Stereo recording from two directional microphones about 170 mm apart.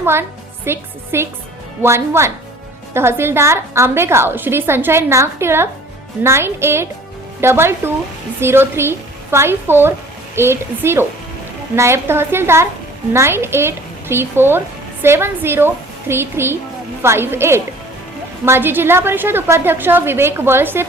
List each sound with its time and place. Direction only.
0.0 s a woman's voice: 15° right (ahead or behind)